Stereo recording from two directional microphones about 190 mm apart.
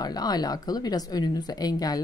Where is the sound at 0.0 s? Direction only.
20° left (ahead or behind).